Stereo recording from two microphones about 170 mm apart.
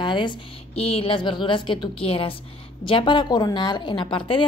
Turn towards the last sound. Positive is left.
turn(degrees=30)  # may be behind; listen again after turning